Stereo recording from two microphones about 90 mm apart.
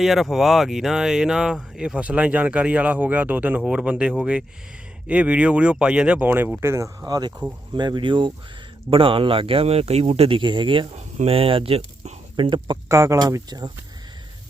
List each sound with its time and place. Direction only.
0.0 s speech: centre (ahead or behind); by 8.3 s 60° right (ahead or behind)
8.9 s speech: 80° right
11.3 s speech: 90° right
12.4 s speech: 55° right (ahead or behind)
12.9 s speech: 35° right (ahead or behind)